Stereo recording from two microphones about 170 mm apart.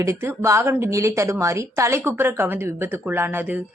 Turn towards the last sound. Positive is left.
turn(degrees=-10)  # may be behind; listen again after turning